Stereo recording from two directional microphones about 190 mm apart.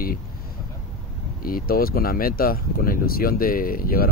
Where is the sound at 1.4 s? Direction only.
50° left (ahead or behind).